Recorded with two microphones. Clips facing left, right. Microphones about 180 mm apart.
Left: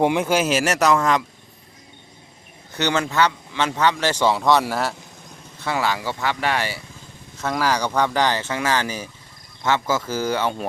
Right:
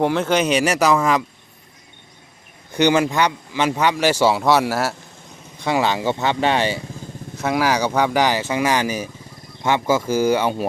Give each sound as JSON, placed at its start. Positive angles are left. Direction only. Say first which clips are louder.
{"t": 0.0, "sound": "speech", "louder": "right 1 dB", "side_deg": 15}
{"t": 2.7, "sound": "speech", "louder": "right 4 dB", "side_deg": -15}
{"t": 5.5, "sound": "speech", "louder": "right 4 dB", "side_deg": -15}